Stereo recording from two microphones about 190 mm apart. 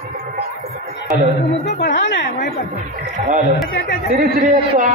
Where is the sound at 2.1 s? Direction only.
60° left (ahead or behind).